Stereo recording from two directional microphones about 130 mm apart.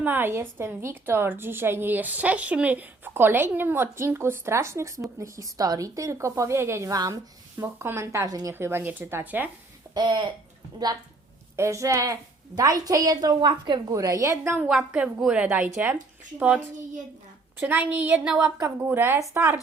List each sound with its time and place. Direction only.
0.0 s a woman's voice: 15° right (ahead or behind)
9.9 s speech: 35° right (ahead or behind)
11.5 s a woman's voice: 20° right (ahead or behind)
17.6 s a woman's voice: 15° right (ahead or behind)
18.3 s a woman's voice: 25° right (ahead or behind)